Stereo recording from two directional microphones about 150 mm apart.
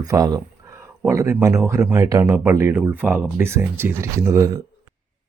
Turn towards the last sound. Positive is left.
turn(degrees=-20)  # may be behind; listen again after turning